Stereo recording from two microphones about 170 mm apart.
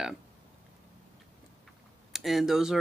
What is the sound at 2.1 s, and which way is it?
Speech, centre (ahead or behind).